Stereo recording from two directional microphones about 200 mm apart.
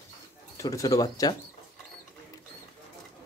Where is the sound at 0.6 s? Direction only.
15° left (ahead or behind).